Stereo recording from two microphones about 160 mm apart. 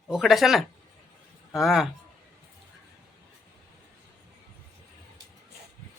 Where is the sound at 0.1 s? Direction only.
Centre (ahead or behind).